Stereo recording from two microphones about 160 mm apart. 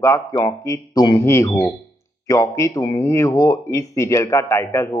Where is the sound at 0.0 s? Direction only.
20° left (ahead or behind).